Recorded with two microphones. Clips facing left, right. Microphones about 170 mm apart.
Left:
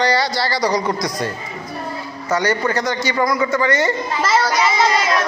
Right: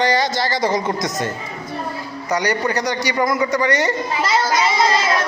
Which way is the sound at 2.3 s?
15° right (ahead or behind).